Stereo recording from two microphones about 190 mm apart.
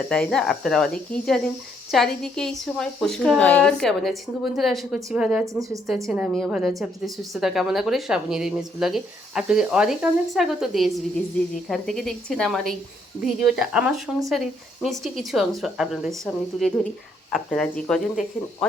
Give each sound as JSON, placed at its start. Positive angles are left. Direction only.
{"t": 0.1, "sound": "a woman's voice", "side_deg": 5}
{"t": 5.5, "sound": "speech", "side_deg": -15}
{"t": 6.1, "sound": "a woman's voice", "side_deg": 0}